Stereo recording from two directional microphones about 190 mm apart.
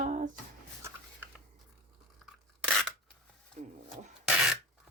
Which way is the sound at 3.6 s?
40° right (ahead or behind).